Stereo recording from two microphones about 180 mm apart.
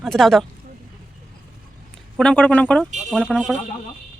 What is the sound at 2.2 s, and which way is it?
Speech, 5° left (ahead or behind).